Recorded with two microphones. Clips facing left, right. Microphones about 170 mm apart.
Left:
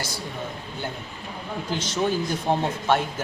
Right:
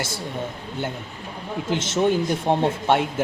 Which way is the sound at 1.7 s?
25° right (ahead or behind).